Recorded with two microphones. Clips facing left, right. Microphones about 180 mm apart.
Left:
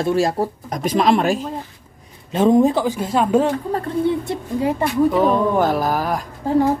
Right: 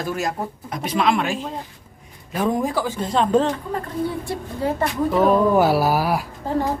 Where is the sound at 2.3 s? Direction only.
25° left (ahead or behind).